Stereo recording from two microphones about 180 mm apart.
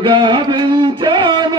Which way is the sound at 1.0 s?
25° right (ahead or behind).